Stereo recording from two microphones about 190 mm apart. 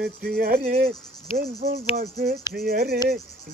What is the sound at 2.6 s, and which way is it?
Speech, 55° right (ahead or behind).